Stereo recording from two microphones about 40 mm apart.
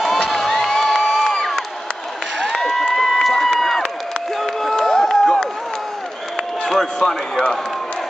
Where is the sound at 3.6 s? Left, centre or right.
Centre.